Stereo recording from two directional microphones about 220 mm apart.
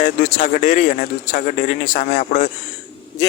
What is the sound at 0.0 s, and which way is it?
Speech, 35° left (ahead or behind).